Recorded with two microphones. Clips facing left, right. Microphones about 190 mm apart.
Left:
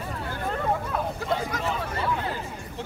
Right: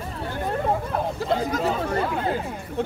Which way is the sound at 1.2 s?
40° right (ahead or behind).